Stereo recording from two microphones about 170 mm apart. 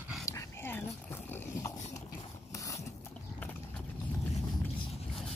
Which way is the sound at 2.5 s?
20° left (ahead or behind).